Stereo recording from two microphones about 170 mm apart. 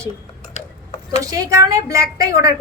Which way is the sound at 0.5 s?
40° left (ahead or behind).